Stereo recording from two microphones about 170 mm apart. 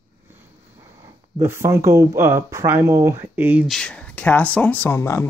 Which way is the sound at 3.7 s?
5° left (ahead or behind).